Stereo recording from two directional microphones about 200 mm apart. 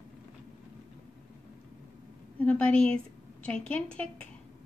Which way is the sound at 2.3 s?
5° left (ahead or behind).